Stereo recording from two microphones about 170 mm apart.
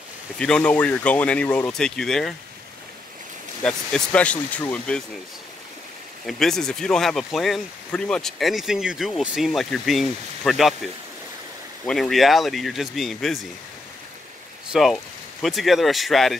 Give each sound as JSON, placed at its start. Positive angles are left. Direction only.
{"t": 0.4, "sound": "speech", "side_deg": 5}
{"t": 3.6, "sound": "speech", "side_deg": 5}
{"t": 6.2, "sound": "speech", "side_deg": 0}
{"t": 14.7, "sound": "speech", "side_deg": 0}